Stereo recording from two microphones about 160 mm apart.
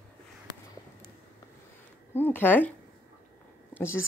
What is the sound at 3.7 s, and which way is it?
Speech, 15° left (ahead or behind).